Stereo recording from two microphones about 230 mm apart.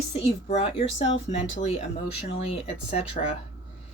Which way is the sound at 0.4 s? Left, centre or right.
Left.